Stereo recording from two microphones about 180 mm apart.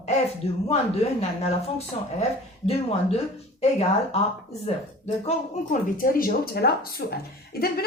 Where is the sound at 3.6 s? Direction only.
35° left (ahead or behind).